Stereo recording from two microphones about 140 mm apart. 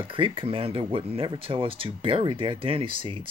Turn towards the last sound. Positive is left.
turn(degrees=-40)  # may be behind; listen again after turning